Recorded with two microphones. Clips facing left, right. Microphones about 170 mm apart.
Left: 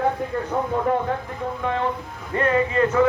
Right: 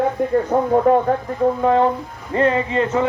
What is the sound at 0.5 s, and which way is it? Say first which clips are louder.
Speech: right 7 dB; 45° right (ahead or behind).